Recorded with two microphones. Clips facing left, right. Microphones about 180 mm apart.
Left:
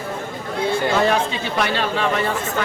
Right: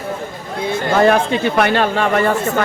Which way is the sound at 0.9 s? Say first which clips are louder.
Right 6 dB; 55° right (ahead or behind).